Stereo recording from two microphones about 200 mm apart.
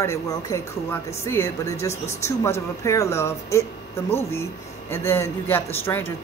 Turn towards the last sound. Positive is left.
turn(degrees=10)  # may be behind; listen again after turning